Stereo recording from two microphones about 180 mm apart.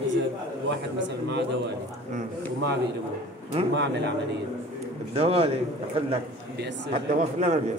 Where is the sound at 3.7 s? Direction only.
75° right (ahead or behind).